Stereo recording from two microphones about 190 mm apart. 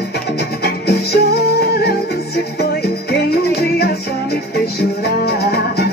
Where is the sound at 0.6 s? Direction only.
55° left (ahead or behind).